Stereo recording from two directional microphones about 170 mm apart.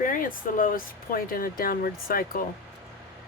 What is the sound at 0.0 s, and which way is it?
Speech, 55° left (ahead or behind).